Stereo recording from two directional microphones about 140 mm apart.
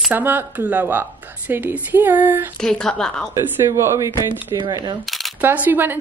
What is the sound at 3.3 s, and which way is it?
Speech, 20° right (ahead or behind).